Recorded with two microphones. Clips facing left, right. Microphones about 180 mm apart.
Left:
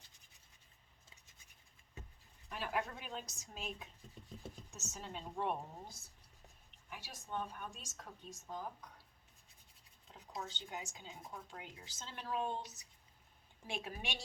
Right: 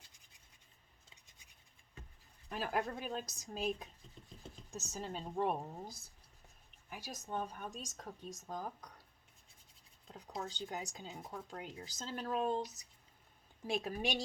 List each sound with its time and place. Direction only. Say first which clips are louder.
2.5 s speech: right 3 dB; 40° right (ahead or behind)
4.2 s a sound: left 1 dB; 10° left (ahead or behind)
4.7 s speech: right 7 dB; 35° right (ahead or behind)
10.1 s speech: right 3 dB; 40° right (ahead or behind)